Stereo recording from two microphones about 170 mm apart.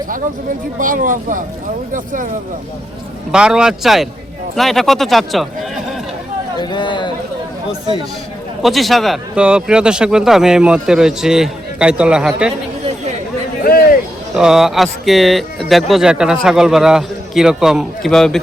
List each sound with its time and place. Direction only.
0.8 s speech: 50° right (ahead or behind)
3.3 s speech: 5° right (ahead or behind)
6.6 s speech: 25° left (ahead or behind)
8.6 s speech: centre (ahead or behind)
13.7 s a sound: 60° left (ahead or behind)
14.3 s speech: 5° right (ahead or behind)